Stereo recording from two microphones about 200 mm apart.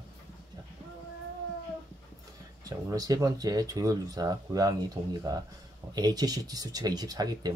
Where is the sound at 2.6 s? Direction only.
15° right (ahead or behind).